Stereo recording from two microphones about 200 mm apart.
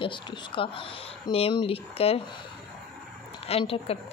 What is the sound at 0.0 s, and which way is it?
Speech, 25° left (ahead or behind).